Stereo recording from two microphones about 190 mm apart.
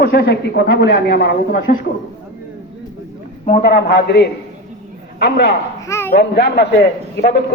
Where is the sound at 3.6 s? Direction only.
55° left (ahead or behind).